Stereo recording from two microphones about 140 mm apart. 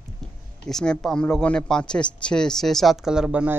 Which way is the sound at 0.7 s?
5° left (ahead or behind).